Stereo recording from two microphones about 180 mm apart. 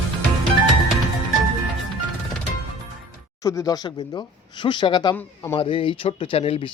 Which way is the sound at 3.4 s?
20° left (ahead or behind).